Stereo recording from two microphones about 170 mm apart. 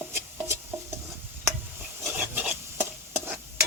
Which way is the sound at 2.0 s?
10° right (ahead or behind).